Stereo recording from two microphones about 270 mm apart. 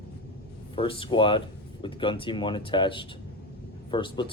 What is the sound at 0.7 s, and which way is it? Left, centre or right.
Speech, centre.